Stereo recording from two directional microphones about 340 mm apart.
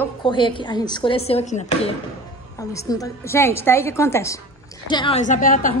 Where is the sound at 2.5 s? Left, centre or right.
Centre.